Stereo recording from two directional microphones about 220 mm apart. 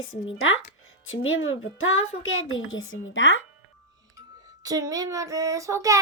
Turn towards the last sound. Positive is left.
turn(degrees=-15)  # may be behind; listen again after turning